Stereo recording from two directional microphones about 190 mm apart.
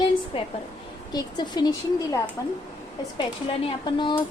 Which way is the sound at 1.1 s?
20° left (ahead or behind).